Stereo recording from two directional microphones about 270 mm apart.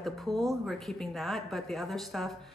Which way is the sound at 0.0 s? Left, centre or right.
Centre.